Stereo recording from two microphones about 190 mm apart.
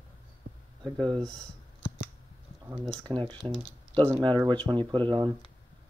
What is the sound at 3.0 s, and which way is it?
Speech, 25° right (ahead or behind).